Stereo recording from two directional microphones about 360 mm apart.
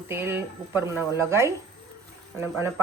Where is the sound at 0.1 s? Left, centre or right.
Centre.